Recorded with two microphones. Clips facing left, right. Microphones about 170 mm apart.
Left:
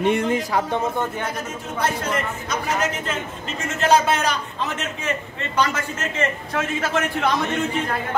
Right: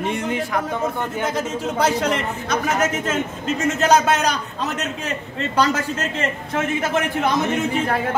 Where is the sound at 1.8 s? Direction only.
80° right.